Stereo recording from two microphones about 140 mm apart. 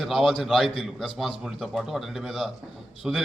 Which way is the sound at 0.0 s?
Centre (ahead or behind).